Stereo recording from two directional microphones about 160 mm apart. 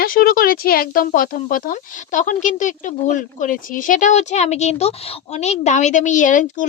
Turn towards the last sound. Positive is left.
turn(degrees=55)  # may be behind; listen again after turning